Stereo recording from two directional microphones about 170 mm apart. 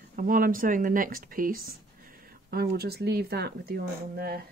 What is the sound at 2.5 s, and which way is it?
Speech, 70° right (ahead or behind).